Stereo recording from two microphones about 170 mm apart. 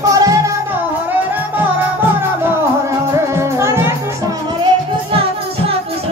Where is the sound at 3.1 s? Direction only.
15° right (ahead or behind).